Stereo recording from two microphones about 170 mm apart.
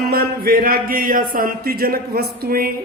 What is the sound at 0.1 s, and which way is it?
A man's voice, 65° right (ahead or behind).